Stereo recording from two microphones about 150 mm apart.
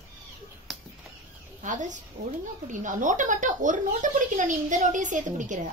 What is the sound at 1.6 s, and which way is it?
A woman's voice, 55° right (ahead or behind).